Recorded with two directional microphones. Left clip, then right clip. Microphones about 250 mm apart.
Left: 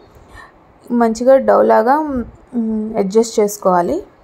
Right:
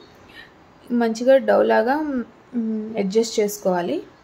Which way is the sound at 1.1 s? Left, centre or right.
Centre.